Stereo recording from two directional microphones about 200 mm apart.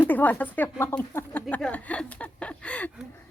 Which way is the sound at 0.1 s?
10° left (ahead or behind).